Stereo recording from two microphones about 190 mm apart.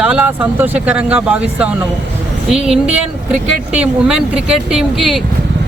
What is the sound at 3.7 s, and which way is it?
Speech, 5° right (ahead or behind).